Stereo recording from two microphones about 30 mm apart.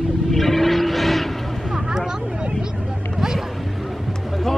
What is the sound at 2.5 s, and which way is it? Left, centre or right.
Vehicle, centre.